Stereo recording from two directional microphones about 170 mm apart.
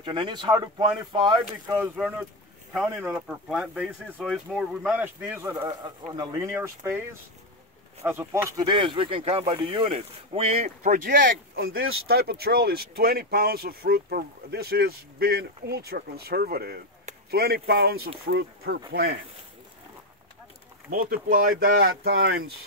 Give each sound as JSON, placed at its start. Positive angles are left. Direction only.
{"t": 0.0, "sound": "speech", "side_deg": -25}
{"t": 2.0, "sound": "speech", "side_deg": -5}
{"t": 5.7, "sound": "speech", "side_deg": -20}
{"t": 8.0, "sound": "speech", "side_deg": -15}
{"t": 10.8, "sound": "speech", "side_deg": -50}
{"t": 20.9, "sound": "speech", "side_deg": -55}